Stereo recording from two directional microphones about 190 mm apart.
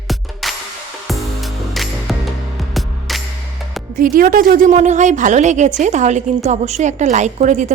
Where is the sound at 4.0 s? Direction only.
45° right (ahead or behind).